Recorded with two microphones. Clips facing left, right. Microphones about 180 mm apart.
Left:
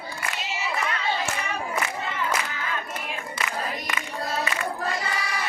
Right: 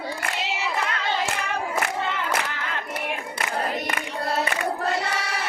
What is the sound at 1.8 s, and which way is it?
Crowd, 60° right (ahead or behind).